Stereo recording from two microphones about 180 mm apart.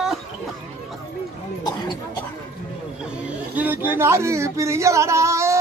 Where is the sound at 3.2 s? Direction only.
10° right (ahead or behind).